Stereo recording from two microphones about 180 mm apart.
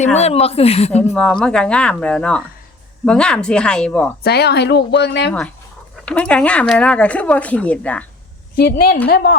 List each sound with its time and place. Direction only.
0.2 s speech: 35° left (ahead or behind)
1.1 s speech: 5° left (ahead or behind)
4.2 s speech: 65° left (ahead or behind)
6.1 s speech: 5° left (ahead or behind)
8.5 s a woman's voice: 60° left (ahead or behind)